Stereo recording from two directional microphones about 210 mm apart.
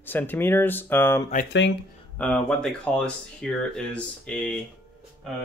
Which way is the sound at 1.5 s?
55° left (ahead or behind).